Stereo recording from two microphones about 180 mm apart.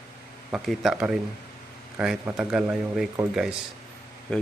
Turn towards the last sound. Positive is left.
turn(degrees=5)  # may be behind; listen again after turning